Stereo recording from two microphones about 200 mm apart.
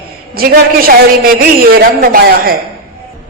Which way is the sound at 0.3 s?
50° right (ahead or behind).